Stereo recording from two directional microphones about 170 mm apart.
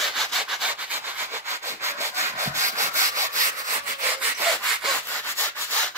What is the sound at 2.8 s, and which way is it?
Sanding, 15° right (ahead or behind).